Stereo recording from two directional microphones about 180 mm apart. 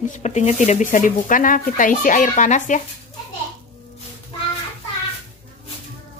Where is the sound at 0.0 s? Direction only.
40° left (ahead or behind).